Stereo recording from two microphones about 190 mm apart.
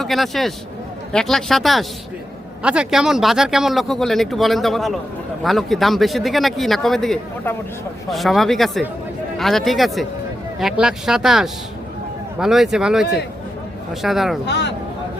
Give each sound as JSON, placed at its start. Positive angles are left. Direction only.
{"t": 0.0, "sound": "speech", "side_deg": 0}
{"t": 14.4, "sound": "speech", "side_deg": 65}